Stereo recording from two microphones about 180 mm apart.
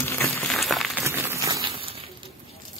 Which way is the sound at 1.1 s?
15° right (ahead or behind).